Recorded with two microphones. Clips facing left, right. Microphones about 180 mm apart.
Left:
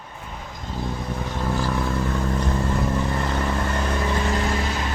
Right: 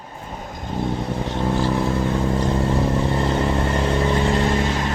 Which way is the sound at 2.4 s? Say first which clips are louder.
Right 4 dB; 30° right (ahead or behind).